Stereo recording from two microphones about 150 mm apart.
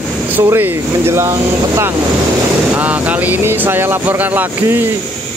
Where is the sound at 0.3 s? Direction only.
15° right (ahead or behind).